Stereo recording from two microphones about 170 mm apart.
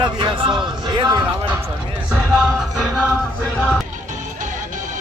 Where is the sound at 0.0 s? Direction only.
30° right (ahead or behind).